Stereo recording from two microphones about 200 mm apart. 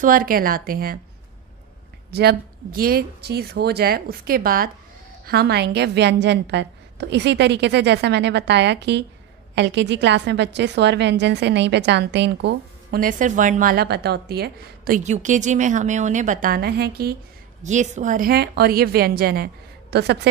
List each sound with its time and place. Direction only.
0.0 s speech: 45° right (ahead or behind)
2.0 s a woman's voice: 55° right (ahead or behind)
15.0 s a woman's voice: 35° right (ahead or behind); by 17.1 s 55° right (ahead or behind)
17.6 s speech: 35° right (ahead or behind); by 20.2 s 55° right (ahead or behind)